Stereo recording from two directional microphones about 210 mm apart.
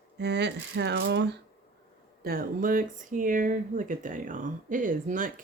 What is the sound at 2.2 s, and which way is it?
Speech, 45° right (ahead or behind).